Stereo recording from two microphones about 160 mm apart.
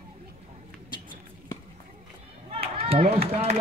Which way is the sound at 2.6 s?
40° right (ahead or behind).